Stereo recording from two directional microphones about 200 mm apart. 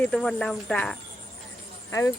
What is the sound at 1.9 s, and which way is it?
Speech, 15° left (ahead or behind).